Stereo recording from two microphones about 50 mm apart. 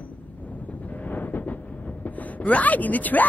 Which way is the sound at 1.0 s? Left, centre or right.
Left.